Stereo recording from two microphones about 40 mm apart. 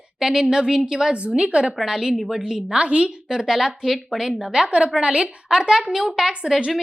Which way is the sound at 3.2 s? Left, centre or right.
Centre.